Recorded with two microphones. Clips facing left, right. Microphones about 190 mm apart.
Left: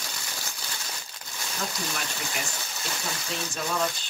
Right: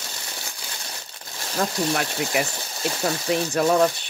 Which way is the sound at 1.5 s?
65° right (ahead or behind).